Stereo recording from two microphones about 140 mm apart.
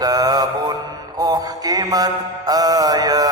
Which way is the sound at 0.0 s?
25° right (ahead or behind).